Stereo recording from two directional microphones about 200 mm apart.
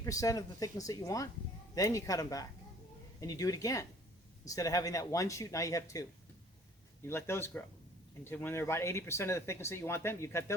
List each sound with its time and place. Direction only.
0.0 s speech: 15° left (ahead or behind)